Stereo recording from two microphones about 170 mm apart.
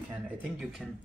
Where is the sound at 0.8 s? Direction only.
Centre (ahead or behind).